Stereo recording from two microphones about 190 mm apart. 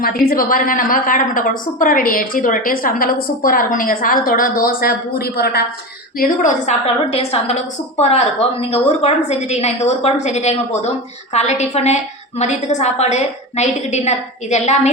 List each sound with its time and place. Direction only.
0.0 s a woman's voice: 50° left (ahead or behind)
6.1 s a woman's voice: 45° left (ahead or behind)